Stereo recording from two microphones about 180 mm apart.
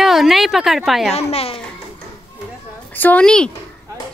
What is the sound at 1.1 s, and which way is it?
Speech, 35° left (ahead or behind).